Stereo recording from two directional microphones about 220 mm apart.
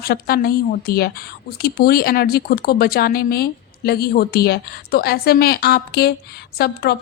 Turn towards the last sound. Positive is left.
turn(degrees=45)  # may be behind; listen again after turning